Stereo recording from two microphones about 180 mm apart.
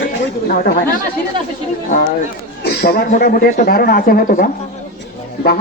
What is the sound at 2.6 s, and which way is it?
Speech, 60° left (ahead or behind).